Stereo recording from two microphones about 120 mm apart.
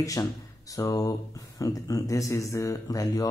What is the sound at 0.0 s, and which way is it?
Speech, 30° left (ahead or behind).